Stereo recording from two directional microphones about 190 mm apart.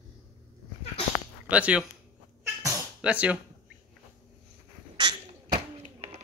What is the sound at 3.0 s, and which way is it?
Speech, 5° right (ahead or behind).